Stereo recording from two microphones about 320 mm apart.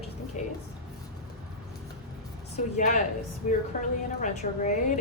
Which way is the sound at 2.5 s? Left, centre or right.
Left.